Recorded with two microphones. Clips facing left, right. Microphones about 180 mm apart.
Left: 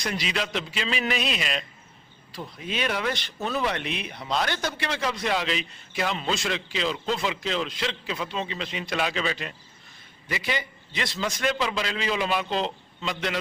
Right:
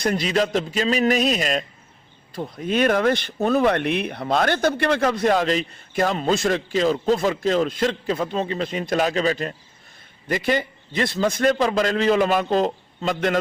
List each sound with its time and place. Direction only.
0.0 s speech: 50° right (ahead or behind)